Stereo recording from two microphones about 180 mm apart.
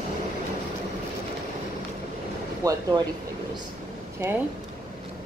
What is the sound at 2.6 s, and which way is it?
Speech, 20° right (ahead or behind).